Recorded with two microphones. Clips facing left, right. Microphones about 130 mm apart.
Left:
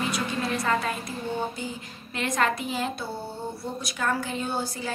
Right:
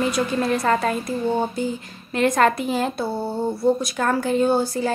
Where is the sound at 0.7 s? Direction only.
45° right (ahead or behind).